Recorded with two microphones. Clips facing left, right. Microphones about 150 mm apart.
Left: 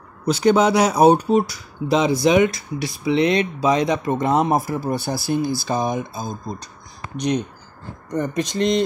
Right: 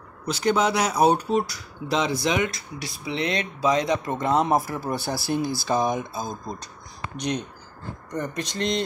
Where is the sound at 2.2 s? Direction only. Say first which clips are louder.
Left 8 dB; 20° left (ahead or behind).